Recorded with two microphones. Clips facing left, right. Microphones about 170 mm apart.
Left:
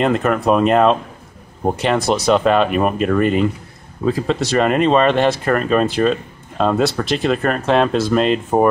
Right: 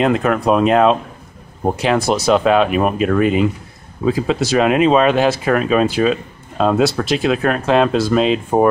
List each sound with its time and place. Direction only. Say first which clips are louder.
0.0 s speech: right 1 dB; centre (ahead or behind)